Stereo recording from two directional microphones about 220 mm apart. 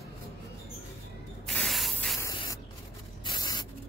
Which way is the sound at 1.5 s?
Centre (ahead or behind).